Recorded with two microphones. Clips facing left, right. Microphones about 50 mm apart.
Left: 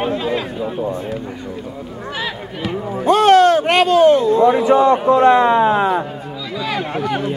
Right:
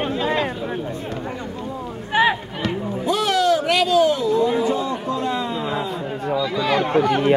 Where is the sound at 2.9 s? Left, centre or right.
Left.